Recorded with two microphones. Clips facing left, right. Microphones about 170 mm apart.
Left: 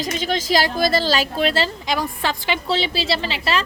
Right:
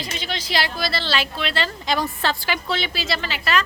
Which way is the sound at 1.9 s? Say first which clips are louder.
Even; 10° left (ahead or behind).